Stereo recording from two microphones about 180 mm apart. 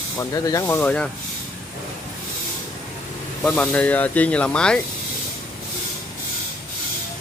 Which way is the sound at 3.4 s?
5° left (ahead or behind).